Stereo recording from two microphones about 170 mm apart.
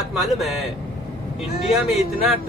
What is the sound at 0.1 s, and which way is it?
Speech, centre (ahead or behind).